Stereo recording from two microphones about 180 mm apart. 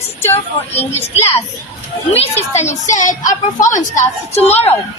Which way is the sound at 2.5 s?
40° left (ahead or behind).